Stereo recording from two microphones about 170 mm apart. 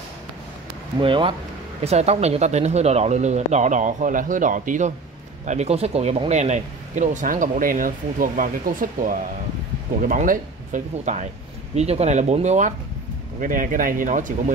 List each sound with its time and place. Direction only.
1.0 s speech: 30° right (ahead or behind)
13.4 s speech: 55° right (ahead or behind)